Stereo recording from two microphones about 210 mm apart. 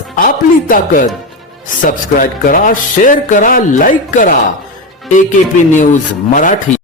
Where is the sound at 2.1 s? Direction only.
40° left (ahead or behind).